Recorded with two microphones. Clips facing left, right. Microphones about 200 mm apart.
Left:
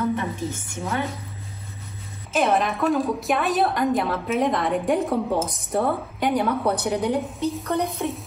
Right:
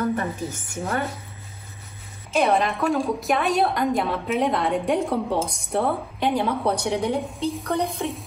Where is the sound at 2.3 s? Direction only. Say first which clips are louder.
Right 1 dB; centre (ahead or behind).